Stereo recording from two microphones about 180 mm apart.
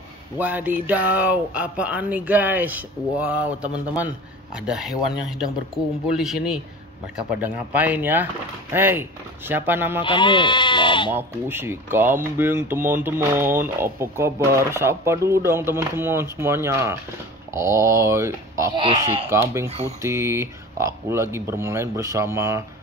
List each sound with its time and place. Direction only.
0.4 s speech: 10° right (ahead or behind)
10.0 s speech: 25° left (ahead or behind)
11.1 s speech: 10° right (ahead or behind)
18.8 s speech: 30° right (ahead or behind)
20.0 s speech: 15° right (ahead or behind)